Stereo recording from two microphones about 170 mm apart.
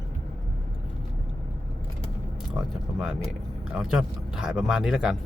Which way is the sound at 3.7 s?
5° right (ahead or behind).